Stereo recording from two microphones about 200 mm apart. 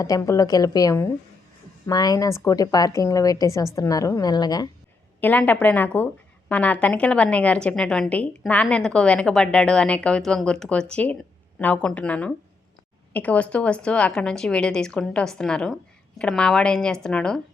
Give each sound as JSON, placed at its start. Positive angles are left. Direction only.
{"t": 0.0, "sound": "a woman's voice", "side_deg": 15}
{"t": 5.2, "sound": "a woman's voice", "side_deg": 10}